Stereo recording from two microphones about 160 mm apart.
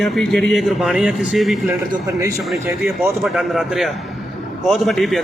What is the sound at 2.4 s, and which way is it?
A man's voice, centre (ahead or behind).